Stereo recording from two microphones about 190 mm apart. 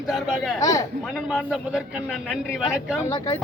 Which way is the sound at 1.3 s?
5° right (ahead or behind).